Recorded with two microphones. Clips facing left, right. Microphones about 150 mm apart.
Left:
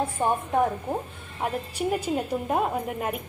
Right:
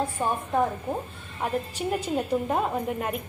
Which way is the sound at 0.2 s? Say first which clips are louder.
Left 4 dB; 20° left (ahead or behind).